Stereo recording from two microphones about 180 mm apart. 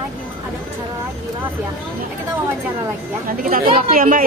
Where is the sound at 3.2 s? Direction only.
55° right (ahead or behind).